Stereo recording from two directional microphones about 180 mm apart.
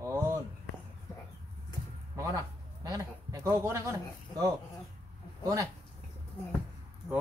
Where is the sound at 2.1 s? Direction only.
20° right (ahead or behind).